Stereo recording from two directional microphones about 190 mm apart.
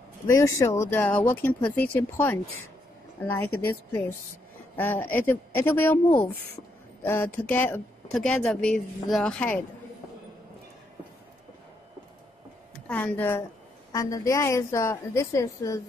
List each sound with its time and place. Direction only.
0.3 s speech: 15° left (ahead or behind)
12.8 s speech: 10° left (ahead or behind)